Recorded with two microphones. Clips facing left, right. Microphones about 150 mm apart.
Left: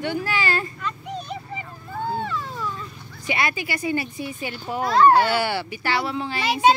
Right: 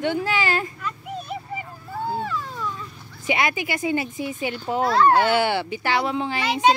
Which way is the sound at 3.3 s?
15° right (ahead or behind).